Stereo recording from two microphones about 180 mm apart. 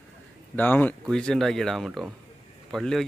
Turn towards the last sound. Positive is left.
turn(degrees=0)  # may be behind; listen again after turning